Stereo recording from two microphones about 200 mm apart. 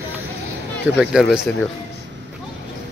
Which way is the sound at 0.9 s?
5° right (ahead or behind).